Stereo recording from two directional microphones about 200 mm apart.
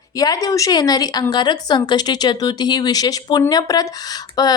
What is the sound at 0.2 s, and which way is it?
A woman's voice, 20° left (ahead or behind).